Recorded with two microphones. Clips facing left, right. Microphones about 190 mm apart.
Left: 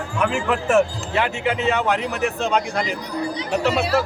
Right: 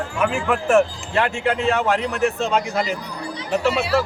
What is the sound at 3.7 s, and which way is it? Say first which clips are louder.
Speech: even; 40° left (ahead or behind).